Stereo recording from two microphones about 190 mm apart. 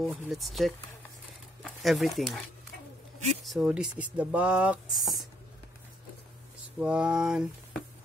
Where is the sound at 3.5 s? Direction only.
5° right (ahead or behind).